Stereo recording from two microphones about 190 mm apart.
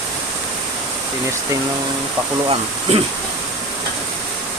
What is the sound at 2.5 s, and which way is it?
Speech, 30° right (ahead or behind).